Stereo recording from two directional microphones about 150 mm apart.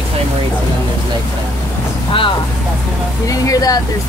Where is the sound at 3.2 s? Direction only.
25° left (ahead or behind).